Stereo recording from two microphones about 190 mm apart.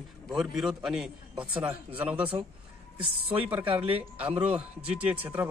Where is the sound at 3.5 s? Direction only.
10° right (ahead or behind).